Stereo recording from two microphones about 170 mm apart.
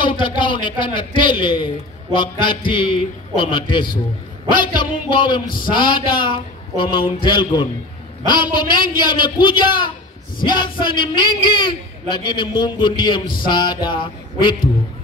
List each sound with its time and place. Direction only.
0.0 s a man's voice: 30° left (ahead or behind)